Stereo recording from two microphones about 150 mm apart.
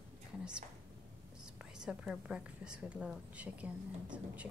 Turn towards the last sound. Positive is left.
turn(degrees=-10)  # may be behind; listen again after turning